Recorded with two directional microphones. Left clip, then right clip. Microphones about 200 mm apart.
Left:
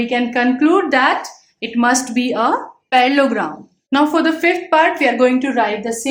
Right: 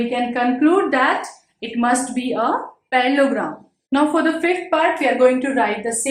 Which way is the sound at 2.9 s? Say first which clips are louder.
Left 4 dB; 35° left (ahead or behind).